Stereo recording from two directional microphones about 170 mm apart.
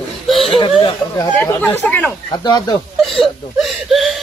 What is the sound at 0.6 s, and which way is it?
Speech, 35° left (ahead or behind).